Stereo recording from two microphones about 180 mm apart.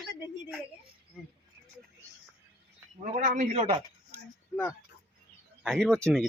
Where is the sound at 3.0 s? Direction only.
45° right (ahead or behind).